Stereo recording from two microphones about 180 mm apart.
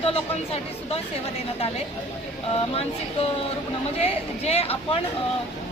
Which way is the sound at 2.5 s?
35° left (ahead or behind).